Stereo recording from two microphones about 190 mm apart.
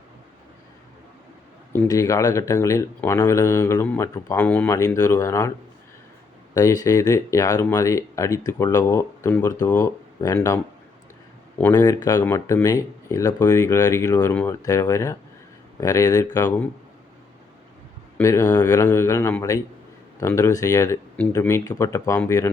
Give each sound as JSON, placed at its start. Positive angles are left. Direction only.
{"t": 1.7, "sound": "speech", "side_deg": 15}
{"t": 6.5, "sound": "speech", "side_deg": 15}
{"t": 18.2, "sound": "speech", "side_deg": 15}